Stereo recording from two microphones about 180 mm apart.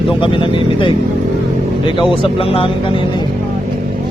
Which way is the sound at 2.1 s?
30° left (ahead or behind).